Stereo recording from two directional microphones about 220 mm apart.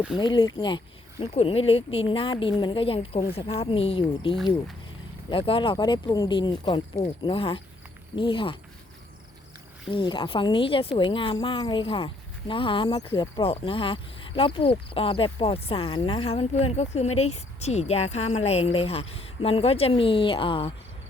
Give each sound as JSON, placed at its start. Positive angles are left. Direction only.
{"t": 0.2, "sound": "speech", "side_deg": 20}
{"t": 9.9, "sound": "speech", "side_deg": 25}